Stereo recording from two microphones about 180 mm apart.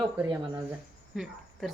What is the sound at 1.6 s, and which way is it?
Speech, centre (ahead or behind).